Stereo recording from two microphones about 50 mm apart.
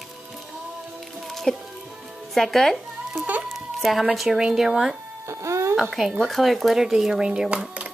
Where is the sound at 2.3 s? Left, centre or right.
Centre.